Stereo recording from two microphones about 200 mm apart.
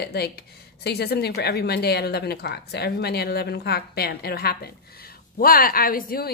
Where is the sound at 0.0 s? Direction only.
50° left (ahead or behind).